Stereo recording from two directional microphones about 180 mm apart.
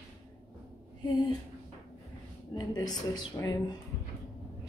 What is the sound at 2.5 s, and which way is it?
A woman's voice, 20° left (ahead or behind).